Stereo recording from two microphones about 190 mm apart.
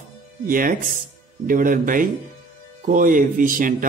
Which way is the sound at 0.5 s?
45° right (ahead or behind).